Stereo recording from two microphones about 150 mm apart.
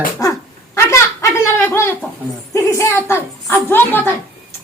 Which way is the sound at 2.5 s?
20° left (ahead or behind).